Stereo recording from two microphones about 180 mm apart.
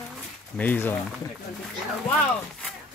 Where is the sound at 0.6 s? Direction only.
10° left (ahead or behind).